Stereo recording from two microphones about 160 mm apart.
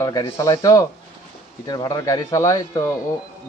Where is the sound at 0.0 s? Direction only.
20° left (ahead or behind).